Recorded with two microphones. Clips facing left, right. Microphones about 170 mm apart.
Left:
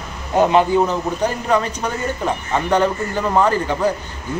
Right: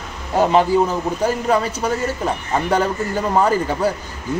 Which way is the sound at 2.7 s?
10° right (ahead or behind).